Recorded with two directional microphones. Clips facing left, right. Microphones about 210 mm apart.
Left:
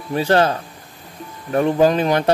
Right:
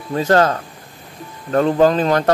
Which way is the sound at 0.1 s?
20° left (ahead or behind).